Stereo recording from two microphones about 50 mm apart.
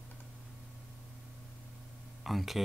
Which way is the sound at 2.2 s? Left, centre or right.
Centre.